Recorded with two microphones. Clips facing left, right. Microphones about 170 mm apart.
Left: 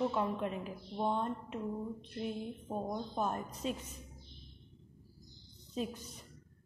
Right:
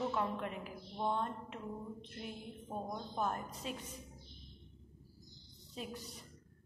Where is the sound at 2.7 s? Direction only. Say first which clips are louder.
Left 4 dB; 20° left (ahead or behind).